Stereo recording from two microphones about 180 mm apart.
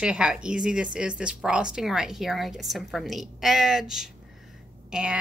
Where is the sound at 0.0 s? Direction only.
5° right (ahead or behind).